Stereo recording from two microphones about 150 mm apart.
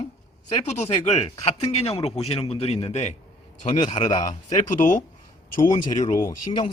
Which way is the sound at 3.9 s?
30° left (ahead or behind).